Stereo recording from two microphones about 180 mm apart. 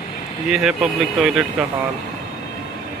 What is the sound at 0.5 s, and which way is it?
Speech, 5° right (ahead or behind).